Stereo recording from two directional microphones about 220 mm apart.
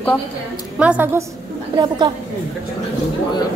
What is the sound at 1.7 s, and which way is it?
Speech, 20° right (ahead or behind).